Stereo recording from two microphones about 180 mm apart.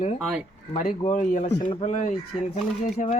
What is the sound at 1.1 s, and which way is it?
Speech, 45° left (ahead or behind).